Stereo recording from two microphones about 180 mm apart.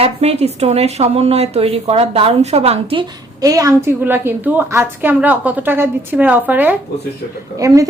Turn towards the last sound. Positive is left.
turn(degrees=-20)  # may be behind; listen again after turning